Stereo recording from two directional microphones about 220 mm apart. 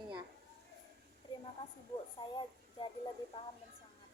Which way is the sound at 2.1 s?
20° left (ahead or behind).